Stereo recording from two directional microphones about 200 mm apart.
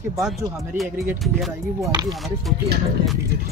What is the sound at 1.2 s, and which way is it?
Speech, centre (ahead or behind).